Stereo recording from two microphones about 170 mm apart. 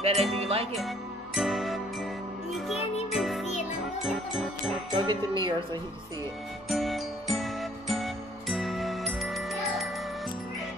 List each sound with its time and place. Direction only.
0.0 s music: 35° right (ahead or behind)
0.7 s music: centre (ahead or behind)
4.9 s speech: 25° right (ahead or behind)
6.7 s music: centre (ahead or behind)